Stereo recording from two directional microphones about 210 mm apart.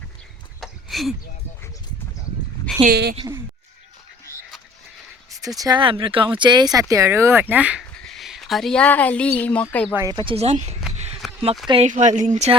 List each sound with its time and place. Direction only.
0.6 s a sound: centre (ahead or behind)
2.9 s a woman's voice: 50° right (ahead or behind)
3.2 s speech: 20° right (ahead or behind)
5.5 s speech: 20° right (ahead or behind); by 9.9 s 5° left (ahead or behind)
9.9 s speech: 15° right (ahead or behind); by 10.8 s 30° right (ahead or behind)
11.2 s a sound: centre (ahead or behind)
11.7 s speech: 30° right (ahead or behind)